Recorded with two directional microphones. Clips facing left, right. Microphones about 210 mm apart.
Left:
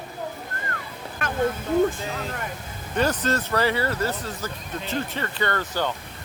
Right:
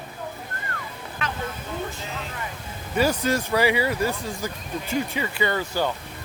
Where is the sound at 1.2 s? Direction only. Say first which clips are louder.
Left 1 dB; 50° left (ahead or behind).